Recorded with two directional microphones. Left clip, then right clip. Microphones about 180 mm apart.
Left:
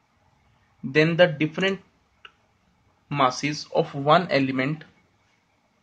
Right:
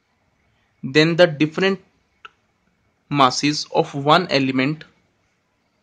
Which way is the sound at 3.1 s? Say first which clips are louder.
Right 6 dB; 40° right (ahead or behind).